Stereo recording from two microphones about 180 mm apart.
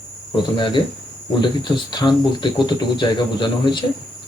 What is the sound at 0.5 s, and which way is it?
Speech, 25° left (ahead or behind).